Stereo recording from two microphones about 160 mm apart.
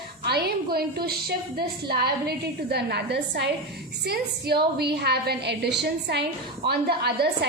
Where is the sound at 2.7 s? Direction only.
90° right.